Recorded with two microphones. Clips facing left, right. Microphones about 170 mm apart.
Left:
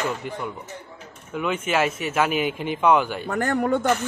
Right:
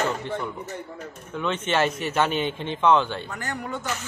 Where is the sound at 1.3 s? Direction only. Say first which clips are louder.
Left 1 dB; 10° left (ahead or behind).